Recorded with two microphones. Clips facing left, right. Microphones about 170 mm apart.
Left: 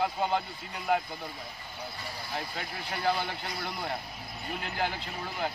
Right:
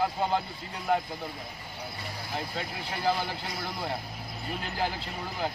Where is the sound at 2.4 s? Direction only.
Centre (ahead or behind).